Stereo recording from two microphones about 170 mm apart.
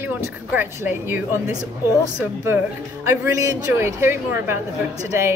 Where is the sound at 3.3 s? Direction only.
20° right (ahead or behind).